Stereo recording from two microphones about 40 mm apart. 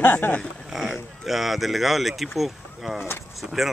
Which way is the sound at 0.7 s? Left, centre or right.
Centre.